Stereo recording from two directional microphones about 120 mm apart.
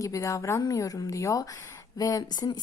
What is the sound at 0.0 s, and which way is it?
Speech, 30° left (ahead or behind).